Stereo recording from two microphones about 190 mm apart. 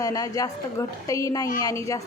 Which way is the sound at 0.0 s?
20° left (ahead or behind).